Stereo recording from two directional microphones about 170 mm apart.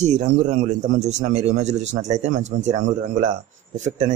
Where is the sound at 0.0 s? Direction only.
45° right (ahead or behind).